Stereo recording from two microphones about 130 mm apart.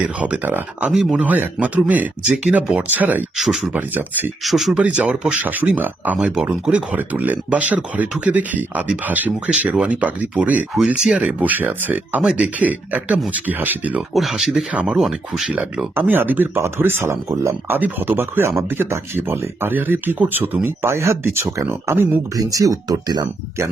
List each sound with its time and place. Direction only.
0.0 s speech: 10° right (ahead or behind)
3.3 s speech: centre (ahead or behind)
4.4 s speech: centre (ahead or behind)
14.1 s speech: centre (ahead or behind); by 22.2 s 15° right (ahead or behind)
22.4 s speech: 25° right (ahead or behind)